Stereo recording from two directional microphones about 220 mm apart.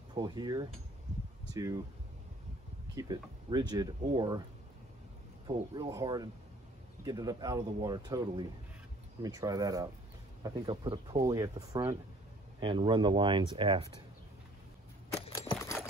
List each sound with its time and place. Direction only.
0.1 s speech: 20° right (ahead or behind)
3.0 s speech: 20° right (ahead or behind)
5.5 s speech: 15° right (ahead or behind)
15.6 s horse: 10° left (ahead or behind)